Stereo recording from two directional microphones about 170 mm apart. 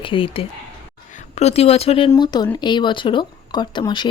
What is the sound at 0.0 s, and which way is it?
Speech, 30° left (ahead or behind).